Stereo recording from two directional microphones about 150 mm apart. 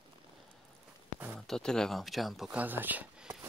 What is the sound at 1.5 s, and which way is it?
Speech, 5° left (ahead or behind).